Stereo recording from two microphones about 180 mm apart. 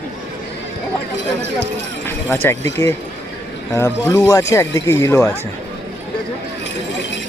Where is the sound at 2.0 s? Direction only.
10° left (ahead or behind).